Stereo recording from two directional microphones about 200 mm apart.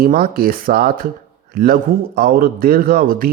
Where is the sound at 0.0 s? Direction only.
45° right (ahead or behind).